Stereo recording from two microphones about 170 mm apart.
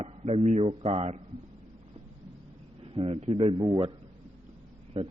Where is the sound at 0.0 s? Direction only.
40° right (ahead or behind).